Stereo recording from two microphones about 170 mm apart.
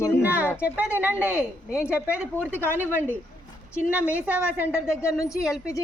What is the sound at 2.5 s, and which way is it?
Speech, 10° left (ahead or behind).